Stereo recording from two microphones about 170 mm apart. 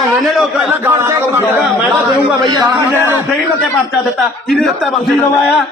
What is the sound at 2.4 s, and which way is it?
Speech, 25° right (ahead or behind).